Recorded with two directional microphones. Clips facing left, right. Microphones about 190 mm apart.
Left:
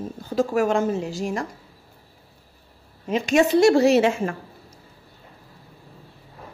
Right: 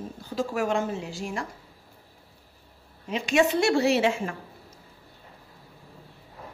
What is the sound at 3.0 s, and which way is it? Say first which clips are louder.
A woman's voice: left 4 dB; 45° left (ahead or behind).